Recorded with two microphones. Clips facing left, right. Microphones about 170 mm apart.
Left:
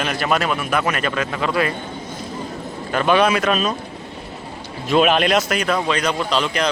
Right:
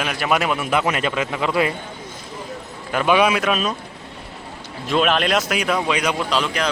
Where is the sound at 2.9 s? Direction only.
10° right (ahead or behind).